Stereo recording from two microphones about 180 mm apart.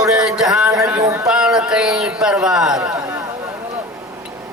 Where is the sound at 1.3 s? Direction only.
5° right (ahead or behind).